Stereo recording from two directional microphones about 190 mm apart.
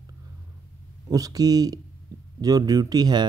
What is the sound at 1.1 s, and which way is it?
Speech, 20° right (ahead or behind).